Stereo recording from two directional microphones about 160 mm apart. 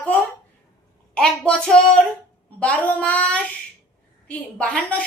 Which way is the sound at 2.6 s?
10° left (ahead or behind).